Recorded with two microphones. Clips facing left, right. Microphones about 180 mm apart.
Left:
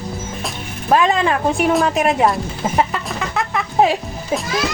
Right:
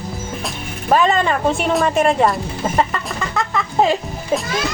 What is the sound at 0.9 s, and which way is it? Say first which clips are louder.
Speech: even; centre (ahead or behind).